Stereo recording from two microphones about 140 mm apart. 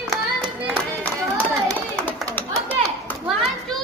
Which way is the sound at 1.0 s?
10° left (ahead or behind).